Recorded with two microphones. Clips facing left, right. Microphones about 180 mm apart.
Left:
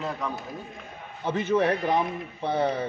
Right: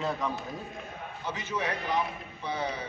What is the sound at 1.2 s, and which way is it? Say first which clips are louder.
A man's voice: left 10 dB; 55° left (ahead or behind).